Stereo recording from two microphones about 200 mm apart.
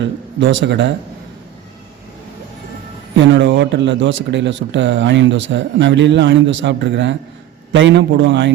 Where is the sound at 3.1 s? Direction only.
65° right (ahead or behind).